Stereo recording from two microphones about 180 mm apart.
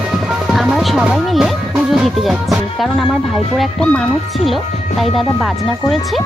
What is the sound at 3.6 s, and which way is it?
Speech, centre (ahead or behind).